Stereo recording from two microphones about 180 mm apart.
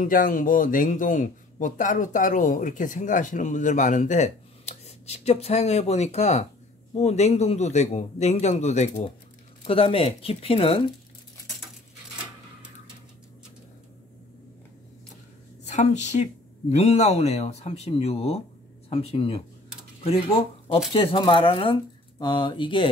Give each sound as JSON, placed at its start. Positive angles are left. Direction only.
{"t": 0.0, "sound": "speech", "side_deg": 50}
{"t": 15.6, "sound": "speech", "side_deg": 40}